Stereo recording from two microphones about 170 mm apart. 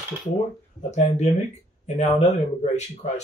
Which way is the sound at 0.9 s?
45° left (ahead or behind).